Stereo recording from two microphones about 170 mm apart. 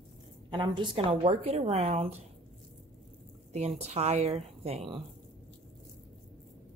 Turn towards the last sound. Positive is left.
turn(degrees=-35)  # may be behind; listen again after turning